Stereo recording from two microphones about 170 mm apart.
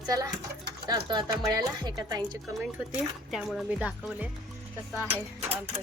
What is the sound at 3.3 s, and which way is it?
Speech, centre (ahead or behind).